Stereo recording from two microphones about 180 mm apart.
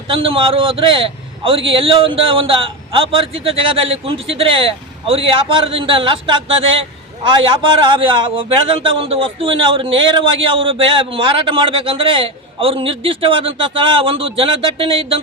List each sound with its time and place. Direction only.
0.1 s a man's voice: 30° right (ahead or behind)